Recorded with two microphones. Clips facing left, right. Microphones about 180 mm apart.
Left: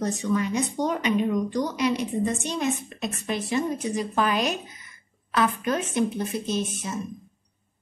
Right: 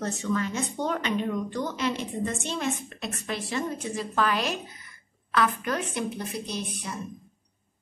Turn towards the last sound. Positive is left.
turn(degrees=25)  # may be behind; listen again after turning